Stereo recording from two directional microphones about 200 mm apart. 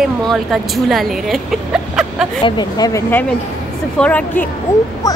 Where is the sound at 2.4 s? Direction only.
20° left (ahead or behind).